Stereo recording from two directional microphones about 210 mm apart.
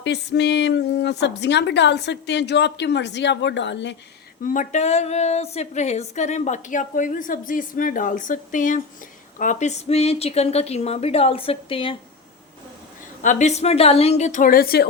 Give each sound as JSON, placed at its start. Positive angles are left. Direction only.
{"t": 0.0, "sound": "a woman's voice", "side_deg": 55}
{"t": 4.4, "sound": "speech", "side_deg": 35}
{"t": 13.2, "sound": "speech", "side_deg": 30}